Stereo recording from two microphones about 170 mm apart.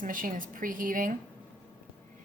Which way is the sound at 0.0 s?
55° right (ahead or behind).